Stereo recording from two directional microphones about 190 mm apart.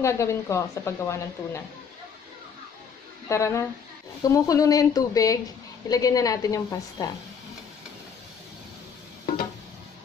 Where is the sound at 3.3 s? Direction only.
15° left (ahead or behind).